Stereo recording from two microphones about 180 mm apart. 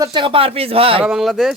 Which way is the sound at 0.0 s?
25° right (ahead or behind).